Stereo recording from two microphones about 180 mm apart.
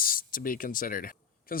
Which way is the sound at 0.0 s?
50° left (ahead or behind).